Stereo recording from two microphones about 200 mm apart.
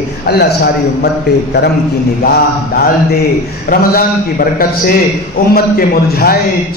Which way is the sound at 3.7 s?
45° left (ahead or behind).